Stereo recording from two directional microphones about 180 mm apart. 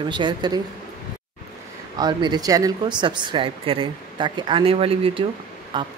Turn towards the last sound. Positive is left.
turn(degrees=-25)  # may be behind; listen again after turning